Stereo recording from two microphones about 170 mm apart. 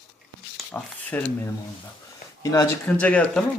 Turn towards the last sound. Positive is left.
turn(degrees=5)  # may be behind; listen again after turning